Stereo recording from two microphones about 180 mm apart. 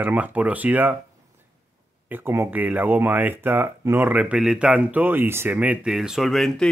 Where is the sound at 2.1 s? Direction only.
10° right (ahead or behind).